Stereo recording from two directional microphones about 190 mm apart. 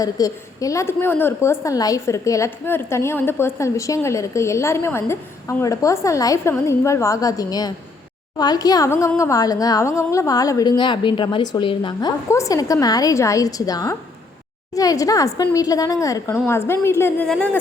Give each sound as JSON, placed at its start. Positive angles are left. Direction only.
{"t": 0.0, "sound": "a woman's voice", "side_deg": 20}